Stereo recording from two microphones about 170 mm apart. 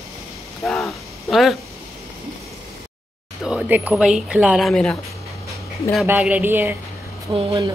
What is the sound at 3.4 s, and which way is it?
Speech, 5° right (ahead or behind).